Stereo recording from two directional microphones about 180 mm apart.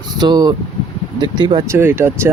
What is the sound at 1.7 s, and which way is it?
Speech, 10° right (ahead or behind).